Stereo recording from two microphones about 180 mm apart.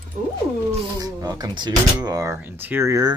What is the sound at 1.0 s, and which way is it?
Speech, 20° right (ahead or behind).